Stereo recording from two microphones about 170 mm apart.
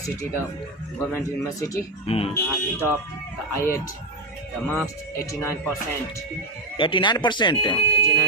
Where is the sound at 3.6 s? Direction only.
15° left (ahead or behind).